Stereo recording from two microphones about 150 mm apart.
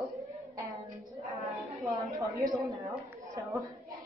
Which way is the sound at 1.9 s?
20° right (ahead or behind).